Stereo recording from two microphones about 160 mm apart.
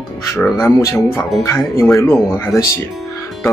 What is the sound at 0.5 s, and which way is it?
Speech, 20° left (ahead or behind).